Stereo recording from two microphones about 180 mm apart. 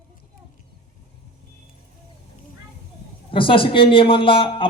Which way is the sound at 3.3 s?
30° left (ahead or behind).